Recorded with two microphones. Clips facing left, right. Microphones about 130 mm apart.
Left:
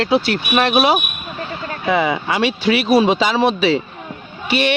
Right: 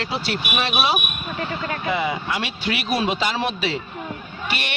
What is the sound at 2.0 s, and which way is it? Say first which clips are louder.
Speech: left 7 dB; 90° left.